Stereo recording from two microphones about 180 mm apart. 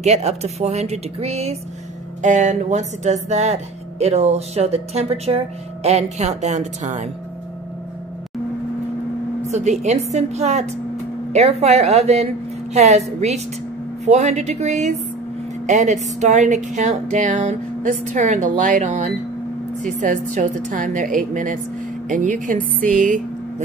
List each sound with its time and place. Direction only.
0.0 s speech: 40° right (ahead or behind)
9.5 s speech: 40° right (ahead or behind)
11.6 s speech: 35° right (ahead or behind)
22.6 s a sound: 10° left (ahead or behind)
22.9 s speech: 45° right (ahead or behind)